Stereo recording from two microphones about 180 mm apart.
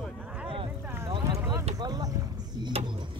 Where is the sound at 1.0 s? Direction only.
30° right (ahead or behind).